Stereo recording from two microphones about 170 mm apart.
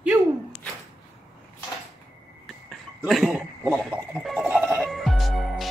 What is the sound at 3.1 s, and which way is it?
Speech, 5° right (ahead or behind).